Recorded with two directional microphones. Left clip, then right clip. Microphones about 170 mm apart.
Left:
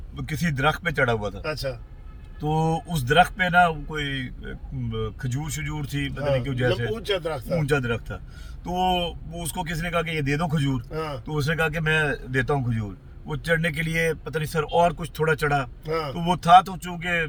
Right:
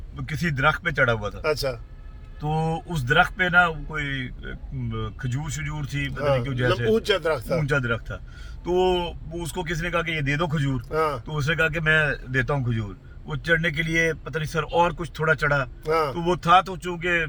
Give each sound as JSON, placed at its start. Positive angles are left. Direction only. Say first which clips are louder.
{"t": 0.3, "sound": "speech", "louder": "right 2 dB", "side_deg": 15}
{"t": 1.4, "sound": "a man's voice", "louder": "right 5 dB", "side_deg": -70}
{"t": 2.4, "sound": "speech", "louder": "left 2 dB", "side_deg": 20}
{"t": 6.1, "sound": "speech", "louder": "right 2 dB", "side_deg": -60}
{"t": 6.4, "sound": "speech", "louder": "even", "side_deg": 15}
{"t": 6.9, "sound": "speech", "louder": "right 5 dB", "side_deg": -60}
{"t": 7.6, "sound": "speech", "louder": "even", "side_deg": 15}
{"t": 10.9, "sound": "speech", "louder": "right 12 dB", "side_deg": -60}
{"t": 11.3, "sound": "speech", "louder": "right 1 dB", "side_deg": 15}
{"t": 15.8, "sound": "speech", "louder": "right 5 dB", "side_deg": -60}
{"t": 16.1, "sound": "speech", "louder": "left 5 dB", "side_deg": 15}